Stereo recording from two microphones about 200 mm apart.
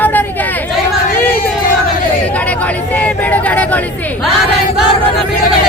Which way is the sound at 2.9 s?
5° left (ahead or behind).